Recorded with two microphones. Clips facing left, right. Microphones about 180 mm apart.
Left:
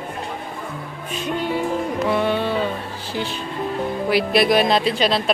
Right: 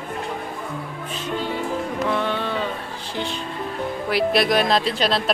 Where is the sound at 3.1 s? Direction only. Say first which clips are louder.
Left 2 dB; 5° left (ahead or behind).